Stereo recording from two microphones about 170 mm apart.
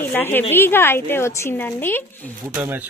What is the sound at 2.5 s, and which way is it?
Speech, 10° right (ahead or behind).